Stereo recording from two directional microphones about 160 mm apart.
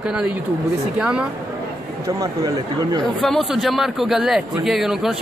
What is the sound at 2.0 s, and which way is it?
Speech, 20° right (ahead or behind).